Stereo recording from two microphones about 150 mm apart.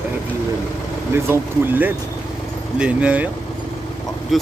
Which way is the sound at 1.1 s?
15° right (ahead or behind).